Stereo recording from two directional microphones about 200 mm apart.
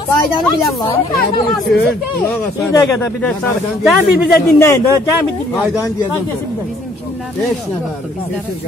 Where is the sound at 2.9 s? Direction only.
5° left (ahead or behind).